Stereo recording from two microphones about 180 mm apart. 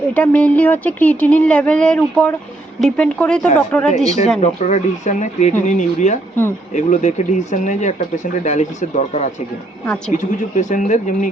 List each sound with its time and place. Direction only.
0.1 s speech: 5° left (ahead or behind)
3.8 s speech: 40° left (ahead or behind)